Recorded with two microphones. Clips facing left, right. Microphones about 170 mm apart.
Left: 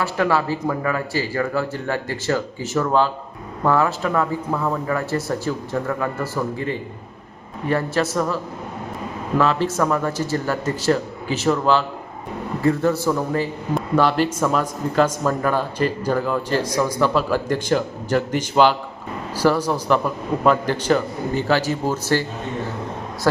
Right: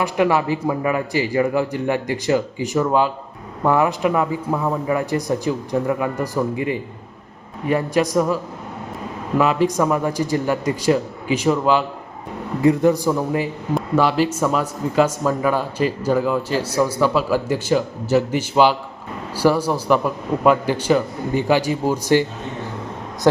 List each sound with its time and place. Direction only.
0.0 s a man's voice: 15° right (ahead or behind)
9.6 s a man's voice: 15° right (ahead or behind)